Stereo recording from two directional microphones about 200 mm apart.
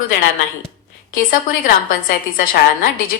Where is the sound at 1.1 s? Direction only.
45° left (ahead or behind).